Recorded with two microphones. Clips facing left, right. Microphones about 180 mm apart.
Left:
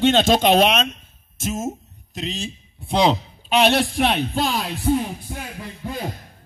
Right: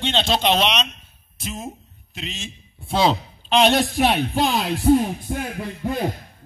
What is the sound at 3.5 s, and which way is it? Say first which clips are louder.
Speech: even; 5° left (ahead or behind).